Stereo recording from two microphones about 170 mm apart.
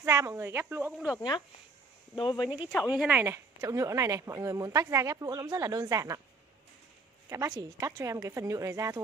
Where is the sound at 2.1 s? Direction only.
25° left (ahead or behind).